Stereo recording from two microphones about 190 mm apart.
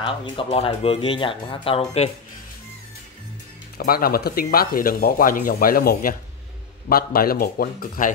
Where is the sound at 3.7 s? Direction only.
50° left (ahead or behind).